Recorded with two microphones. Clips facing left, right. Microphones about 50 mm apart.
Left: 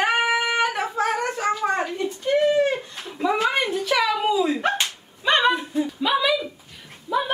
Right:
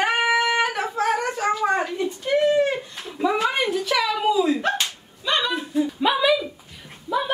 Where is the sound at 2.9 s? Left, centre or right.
Centre.